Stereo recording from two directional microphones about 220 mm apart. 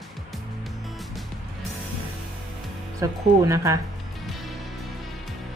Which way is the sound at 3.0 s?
15° right (ahead or behind).